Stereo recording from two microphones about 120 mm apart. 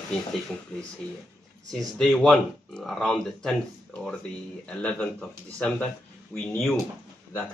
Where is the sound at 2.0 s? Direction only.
5° left (ahead or behind).